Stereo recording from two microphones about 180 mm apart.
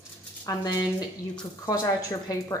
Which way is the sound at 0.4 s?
20° left (ahead or behind).